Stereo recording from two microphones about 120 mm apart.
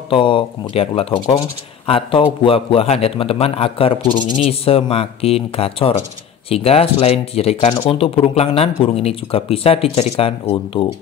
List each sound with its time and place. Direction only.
0.1 s a man's voice: 45° left (ahead or behind)
4.5 s a man's voice: 55° left (ahead or behind)